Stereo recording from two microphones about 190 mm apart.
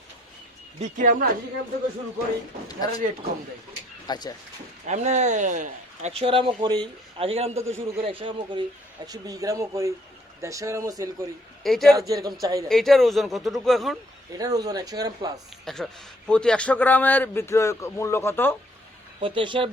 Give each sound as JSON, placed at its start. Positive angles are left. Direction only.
{"t": 0.8, "sound": "speech", "side_deg": -45}
{"t": 4.0, "sound": "speech", "side_deg": 20}
{"t": 4.9, "sound": "speech", "side_deg": -40}
{"t": 8.2, "sound": "speech", "side_deg": -25}
{"t": 11.6, "sound": "speech", "side_deg": 0}
{"t": 11.9, "sound": "speech", "side_deg": -20}
{"t": 12.6, "sound": "speech", "side_deg": 0}
{"t": 14.3, "sound": "speech", "side_deg": -20}
{"t": 15.6, "sound": "a man's voice", "side_deg": 5}
{"t": 19.2, "sound": "speech", "side_deg": -25}